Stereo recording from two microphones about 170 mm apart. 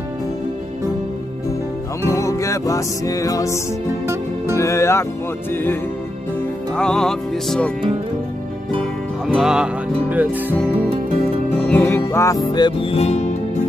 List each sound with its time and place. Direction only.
2.0 s music: 20° left (ahead or behind)
9.3 s music: 5° right (ahead or behind)
11.5 s music: 10° left (ahead or behind); by 13.3 s 40° left (ahead or behind)